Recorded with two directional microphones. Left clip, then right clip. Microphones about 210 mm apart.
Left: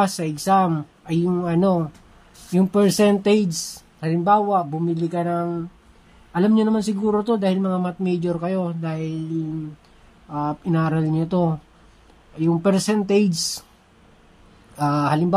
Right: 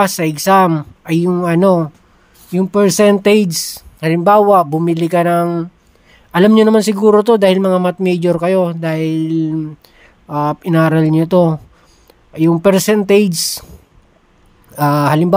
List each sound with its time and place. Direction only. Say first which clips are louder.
0.0 s speech: right 8 dB; 30° right (ahead or behind)
2.5 s speech: right 6 dB; 20° right (ahead or behind)
14.8 s speech: right 8 dB; 30° right (ahead or behind)